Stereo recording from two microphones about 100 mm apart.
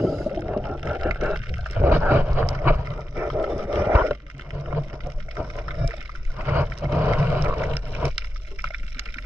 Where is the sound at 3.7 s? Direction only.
20° right (ahead or behind).